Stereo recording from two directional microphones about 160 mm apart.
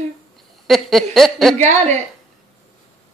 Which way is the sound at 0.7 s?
Centre (ahead or behind).